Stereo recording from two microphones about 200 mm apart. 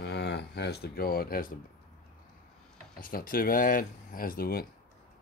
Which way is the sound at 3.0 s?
45° left (ahead or behind).